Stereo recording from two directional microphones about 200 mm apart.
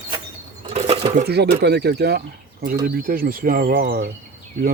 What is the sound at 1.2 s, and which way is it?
Speech, 55° right (ahead or behind).